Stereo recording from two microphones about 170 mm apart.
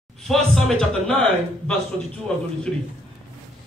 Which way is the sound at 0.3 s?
Centre (ahead or behind).